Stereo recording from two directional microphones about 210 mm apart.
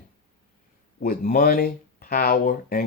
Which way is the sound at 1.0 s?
40° left (ahead or behind).